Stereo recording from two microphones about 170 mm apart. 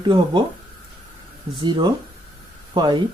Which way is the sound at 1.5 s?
25° right (ahead or behind).